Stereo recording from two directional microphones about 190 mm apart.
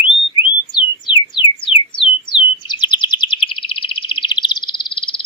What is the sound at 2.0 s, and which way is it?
Bird, 25° left (ahead or behind).